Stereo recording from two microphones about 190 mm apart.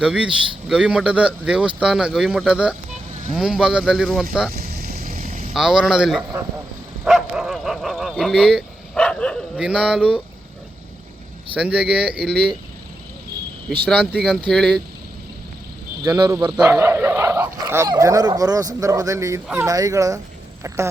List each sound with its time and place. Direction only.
0.0 s speech: 5° right (ahead or behind)
4.5 s vehicle: 55° right (ahead or behind)
5.5 s speech: 5° right (ahead or behind)
7.0 s bow-wow: centre (ahead or behind)
11.5 s speech: 5° right (ahead or behind)
12.1 s speech: 55° right (ahead or behind)
13.8 s speech: centre (ahead or behind)
16.0 s speech: 20° right (ahead or behind)